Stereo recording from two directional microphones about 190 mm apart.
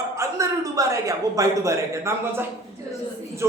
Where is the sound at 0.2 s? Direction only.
15° right (ahead or behind).